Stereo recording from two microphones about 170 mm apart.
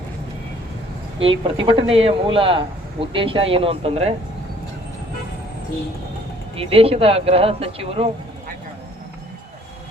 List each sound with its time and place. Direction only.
1.2 s speech: 30° right (ahead or behind)
6.6 s speech: 35° right (ahead or behind)